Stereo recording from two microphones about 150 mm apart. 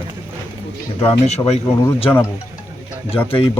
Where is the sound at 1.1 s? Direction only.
45° left (ahead or behind).